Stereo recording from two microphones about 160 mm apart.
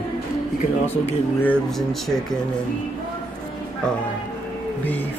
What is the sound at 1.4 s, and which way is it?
Speech, 5° left (ahead or behind).